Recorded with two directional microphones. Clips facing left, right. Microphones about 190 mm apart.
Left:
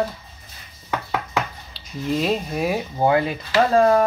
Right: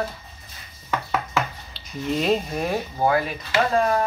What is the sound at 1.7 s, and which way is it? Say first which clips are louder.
Speech: left 2 dB; centre (ahead or behind).